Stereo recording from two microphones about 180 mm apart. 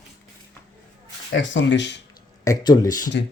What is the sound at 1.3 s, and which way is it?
Speech, 90° left.